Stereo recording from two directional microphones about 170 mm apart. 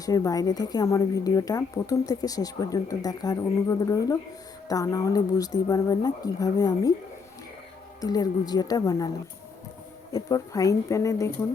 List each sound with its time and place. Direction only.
0.0 s a woman's voice: 20° left (ahead or behind)
8.0 s a woman's voice: 25° left (ahead or behind)
10.1 s a woman's voice: 20° left (ahead or behind)